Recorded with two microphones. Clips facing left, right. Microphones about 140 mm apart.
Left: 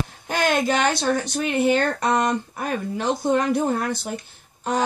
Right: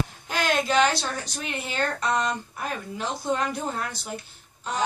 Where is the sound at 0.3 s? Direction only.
55° left (ahead or behind).